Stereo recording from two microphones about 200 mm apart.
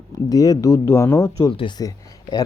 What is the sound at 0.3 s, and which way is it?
Speech, 15° left (ahead or behind).